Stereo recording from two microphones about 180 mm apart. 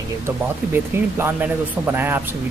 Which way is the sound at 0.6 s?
10° right (ahead or behind).